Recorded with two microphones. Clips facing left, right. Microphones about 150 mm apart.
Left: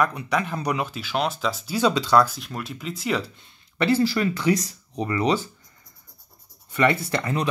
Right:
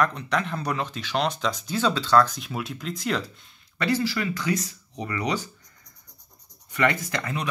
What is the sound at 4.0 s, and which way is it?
Speech, 35° left (ahead or behind).